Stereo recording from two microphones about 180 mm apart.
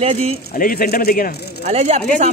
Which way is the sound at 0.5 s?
55° left (ahead or behind).